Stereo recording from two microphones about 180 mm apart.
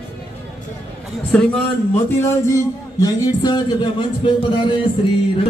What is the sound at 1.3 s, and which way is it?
Speech, 5° left (ahead or behind).